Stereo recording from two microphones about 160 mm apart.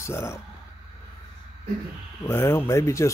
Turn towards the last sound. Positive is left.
turn(degrees=20)  # may be behind; listen again after turning